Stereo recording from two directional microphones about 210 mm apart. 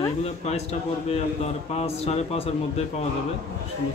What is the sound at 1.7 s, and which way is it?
Speech, 30° left (ahead or behind).